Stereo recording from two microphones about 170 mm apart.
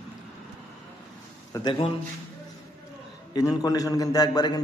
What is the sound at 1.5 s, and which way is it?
Speech, 25° left (ahead or behind).